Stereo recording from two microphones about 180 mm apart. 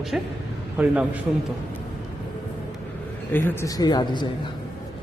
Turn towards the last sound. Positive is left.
turn(degrees=25)  # may be behind; listen again after turning